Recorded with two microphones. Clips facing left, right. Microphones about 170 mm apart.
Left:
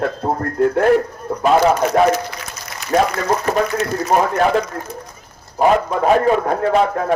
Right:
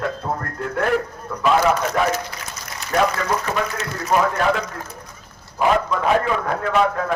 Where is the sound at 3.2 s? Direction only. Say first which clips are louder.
Left 5 dB; 40° left (ahead or behind).